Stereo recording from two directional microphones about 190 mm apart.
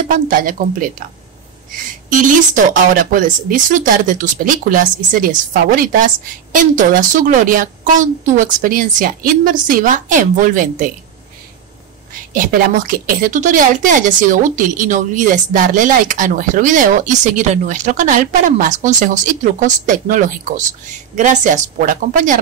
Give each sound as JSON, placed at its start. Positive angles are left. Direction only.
{"t": 0.1, "sound": "a woman's voice", "side_deg": -45}
{"t": 2.0, "sound": "a woman's voice", "side_deg": -45}
{"t": 12.1, "sound": "a woman's voice", "side_deg": -45}